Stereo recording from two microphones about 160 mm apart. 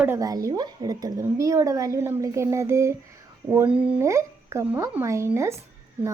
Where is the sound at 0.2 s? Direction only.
20° right (ahead or behind).